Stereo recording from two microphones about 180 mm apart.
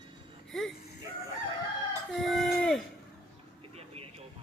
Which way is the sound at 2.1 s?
Centre (ahead or behind).